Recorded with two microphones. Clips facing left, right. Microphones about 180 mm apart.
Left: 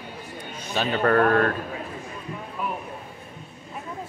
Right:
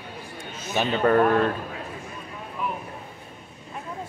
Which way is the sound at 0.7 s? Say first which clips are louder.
Right 1 dB; 20° right (ahead or behind).